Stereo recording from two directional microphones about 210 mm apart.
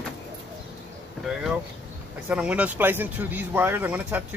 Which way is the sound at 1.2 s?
Centre (ahead or behind).